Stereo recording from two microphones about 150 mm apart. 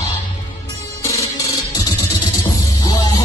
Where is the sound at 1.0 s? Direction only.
20° left (ahead or behind).